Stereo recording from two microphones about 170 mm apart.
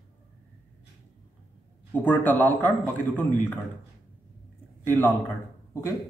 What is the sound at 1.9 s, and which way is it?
A man's voice, 10° left (ahead or behind).